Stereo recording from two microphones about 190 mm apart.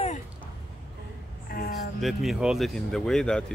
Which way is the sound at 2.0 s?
Centre (ahead or behind).